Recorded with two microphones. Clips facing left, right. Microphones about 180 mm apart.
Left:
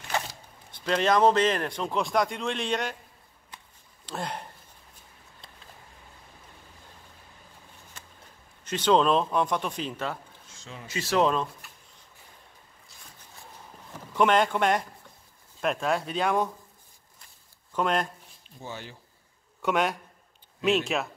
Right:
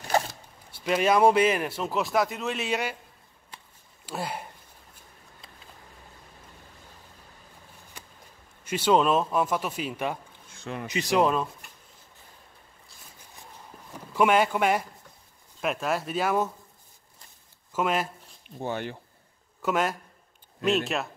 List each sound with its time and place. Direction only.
0.1 s zipper: 35° right (ahead or behind)
0.7 s speech: 10° right (ahead or behind)
4.0 s speech: 5° right (ahead or behind)
8.6 s speech: 10° right (ahead or behind)
10.5 s a sound: 60° right (ahead or behind)
10.9 s speech: 15° right (ahead or behind)
13.9 s speech: 10° right (ahead or behind)
17.7 s speech: 5° right (ahead or behind)
18.6 s speech: 60° right (ahead or behind)
19.6 s speech: centre (ahead or behind)